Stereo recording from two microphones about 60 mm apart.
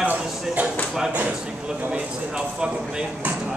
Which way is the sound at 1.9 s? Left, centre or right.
Centre.